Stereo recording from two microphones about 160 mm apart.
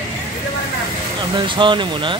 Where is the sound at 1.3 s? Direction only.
30° right (ahead or behind).